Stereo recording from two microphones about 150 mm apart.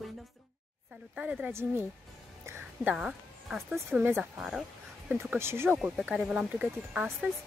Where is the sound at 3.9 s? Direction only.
15° right (ahead or behind).